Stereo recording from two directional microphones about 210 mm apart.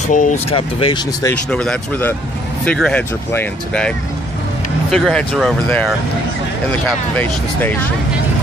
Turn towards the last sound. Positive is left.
turn(degrees=10)  # may be behind; listen again after turning